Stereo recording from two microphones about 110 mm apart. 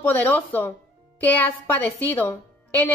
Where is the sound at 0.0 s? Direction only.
15° left (ahead or behind).